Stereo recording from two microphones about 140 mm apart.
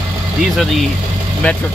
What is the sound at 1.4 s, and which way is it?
Speech, 10° left (ahead or behind).